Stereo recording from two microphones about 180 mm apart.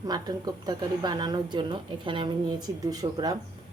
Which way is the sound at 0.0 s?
20° right (ahead or behind).